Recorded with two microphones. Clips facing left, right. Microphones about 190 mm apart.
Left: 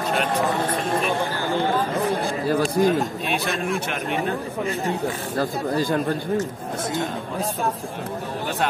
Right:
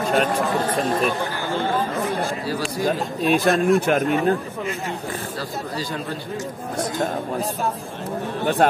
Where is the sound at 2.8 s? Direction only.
55° left (ahead or behind).